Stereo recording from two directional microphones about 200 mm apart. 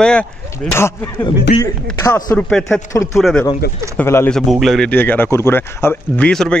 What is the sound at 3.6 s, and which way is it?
Speech, 55° left (ahead or behind).